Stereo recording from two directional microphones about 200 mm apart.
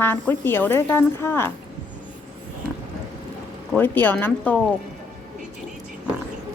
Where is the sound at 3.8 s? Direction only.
10° left (ahead or behind).